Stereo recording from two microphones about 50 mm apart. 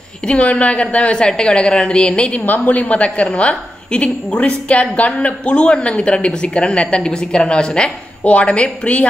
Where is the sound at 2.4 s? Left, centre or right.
Left.